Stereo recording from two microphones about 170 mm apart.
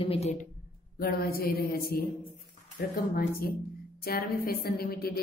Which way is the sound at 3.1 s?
60° left (ahead or behind).